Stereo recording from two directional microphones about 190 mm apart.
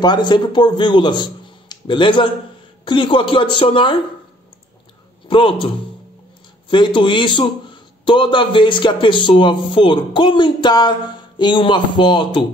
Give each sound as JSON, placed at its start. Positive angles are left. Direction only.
{"t": 0.0, "sound": "a man's voice", "side_deg": 25}
{"t": 5.3, "sound": "a man's voice", "side_deg": 25}
{"t": 6.7, "sound": "a man's voice", "side_deg": 25}